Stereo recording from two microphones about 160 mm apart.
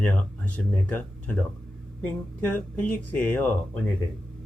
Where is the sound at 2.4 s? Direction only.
10° left (ahead or behind).